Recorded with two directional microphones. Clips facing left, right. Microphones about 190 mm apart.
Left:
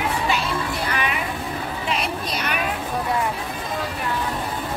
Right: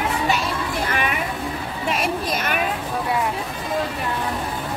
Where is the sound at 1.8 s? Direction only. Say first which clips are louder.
Right 5 dB; 50° right (ahead or behind).